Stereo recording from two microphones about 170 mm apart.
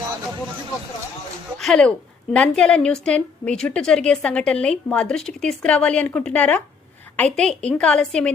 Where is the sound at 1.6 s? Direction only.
Centre (ahead or behind).